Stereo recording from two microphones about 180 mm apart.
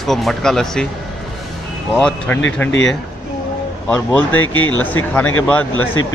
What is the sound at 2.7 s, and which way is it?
Speech, 85° left.